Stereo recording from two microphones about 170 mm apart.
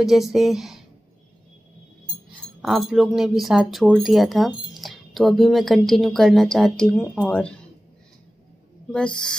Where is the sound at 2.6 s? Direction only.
Centre (ahead or behind).